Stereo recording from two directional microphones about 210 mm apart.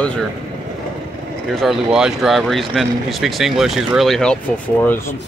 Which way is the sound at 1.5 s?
Centre (ahead or behind).